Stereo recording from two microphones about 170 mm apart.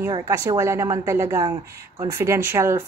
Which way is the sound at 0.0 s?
15° right (ahead or behind).